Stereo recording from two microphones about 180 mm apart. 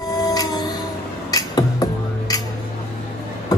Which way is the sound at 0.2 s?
20° left (ahead or behind).